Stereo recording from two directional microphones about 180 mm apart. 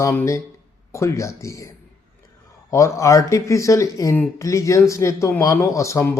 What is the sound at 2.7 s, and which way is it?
Speech, 15° left (ahead or behind).